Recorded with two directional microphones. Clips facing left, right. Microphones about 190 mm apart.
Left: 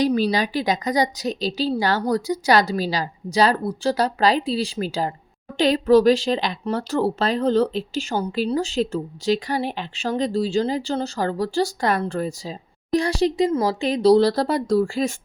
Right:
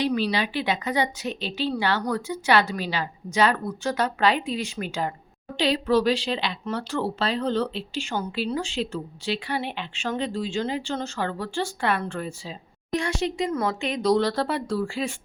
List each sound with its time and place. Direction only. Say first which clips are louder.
0.0 s speech: left 5 dB; 40° left (ahead or behind)
5.5 s speech: left 6 dB; 45° left (ahead or behind)